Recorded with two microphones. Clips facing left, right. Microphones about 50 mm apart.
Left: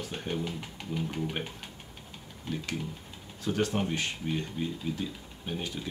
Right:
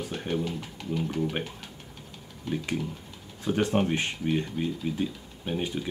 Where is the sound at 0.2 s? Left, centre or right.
Centre.